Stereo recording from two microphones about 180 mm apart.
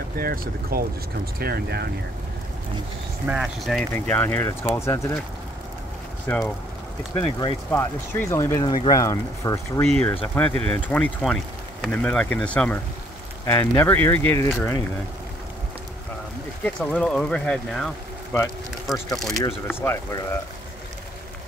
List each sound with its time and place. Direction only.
0.2 s speech: 55° right (ahead or behind)
3.3 s speech: centre (ahead or behind)
3.9 s speech: 10° left (ahead or behind)
6.2 s speech: 5° left (ahead or behind)
7.2 s speech: 25° left (ahead or behind)
7.7 s speech: 15° left (ahead or behind)
10.3 s speech: 10° left (ahead or behind)
16.6 s speech: 5° left (ahead or behind)
19.4 s speech: 10° left (ahead or behind)